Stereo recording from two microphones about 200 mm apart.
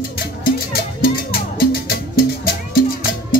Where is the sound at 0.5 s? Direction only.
50° left (ahead or behind).